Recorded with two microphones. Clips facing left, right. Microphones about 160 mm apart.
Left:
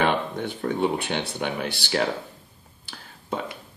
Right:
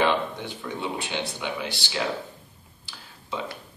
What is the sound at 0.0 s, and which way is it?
Speech, 55° left (ahead or behind).